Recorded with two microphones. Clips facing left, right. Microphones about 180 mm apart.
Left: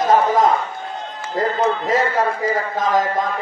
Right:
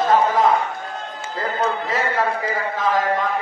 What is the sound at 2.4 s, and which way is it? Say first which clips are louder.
Speech: left 2 dB; 40° left (ahead or behind).